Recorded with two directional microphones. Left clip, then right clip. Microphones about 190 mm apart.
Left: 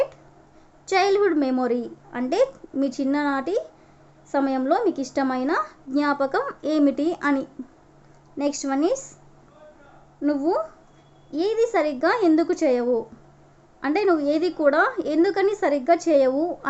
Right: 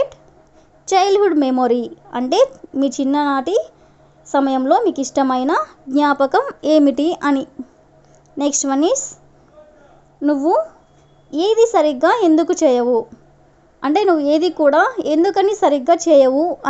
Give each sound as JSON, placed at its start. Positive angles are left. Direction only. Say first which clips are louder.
{"t": 0.9, "sound": "a woman's voice", "louder": "right 6 dB", "side_deg": -30}
{"t": 8.6, "sound": "a woman's voice", "louder": "right 6 dB", "side_deg": -35}
{"t": 10.2, "sound": "a woman's voice", "louder": "right 7 dB", "side_deg": -30}